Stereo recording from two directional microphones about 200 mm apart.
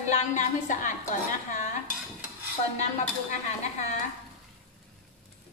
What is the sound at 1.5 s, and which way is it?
Dishes, 40° left (ahead or behind).